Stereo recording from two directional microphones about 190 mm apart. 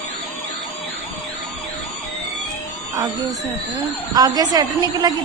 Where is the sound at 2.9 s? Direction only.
20° right (ahead or behind).